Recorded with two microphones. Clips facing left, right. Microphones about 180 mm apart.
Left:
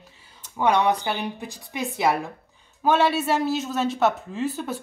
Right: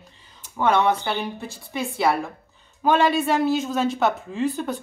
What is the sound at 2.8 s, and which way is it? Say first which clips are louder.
Speech: right 1 dB; 5° left (ahead or behind).